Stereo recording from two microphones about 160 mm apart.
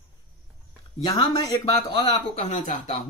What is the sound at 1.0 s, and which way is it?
Speech, 20° left (ahead or behind).